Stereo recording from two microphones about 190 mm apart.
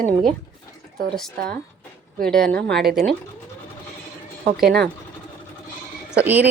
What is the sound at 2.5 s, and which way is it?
Speech, 55° right (ahead or behind).